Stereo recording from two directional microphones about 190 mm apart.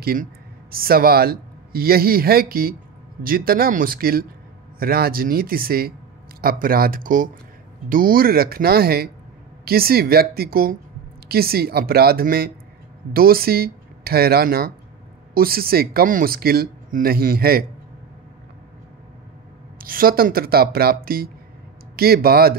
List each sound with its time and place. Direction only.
0.0 s speech: 50° right (ahead or behind)
19.8 s speech: 50° right (ahead or behind)